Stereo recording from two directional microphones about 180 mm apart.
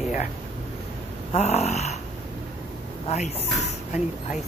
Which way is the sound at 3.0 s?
40° left (ahead or behind).